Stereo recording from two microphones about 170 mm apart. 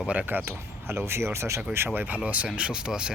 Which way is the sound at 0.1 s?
10° right (ahead or behind).